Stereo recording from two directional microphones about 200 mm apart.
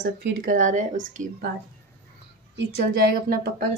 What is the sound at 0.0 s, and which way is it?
Speech, 50° right (ahead or behind).